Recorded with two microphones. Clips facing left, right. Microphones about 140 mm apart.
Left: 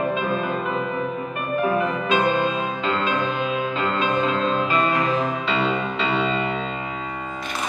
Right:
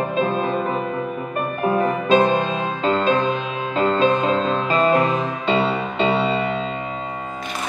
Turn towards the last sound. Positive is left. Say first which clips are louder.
# right 3 dB
turn(degrees=-35)  # may be behind; listen again after turning